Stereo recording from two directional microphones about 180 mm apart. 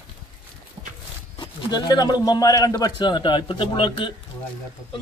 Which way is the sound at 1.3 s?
25° left (ahead or behind).